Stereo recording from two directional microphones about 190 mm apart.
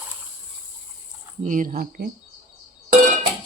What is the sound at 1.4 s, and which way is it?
Speech, 40° right (ahead or behind).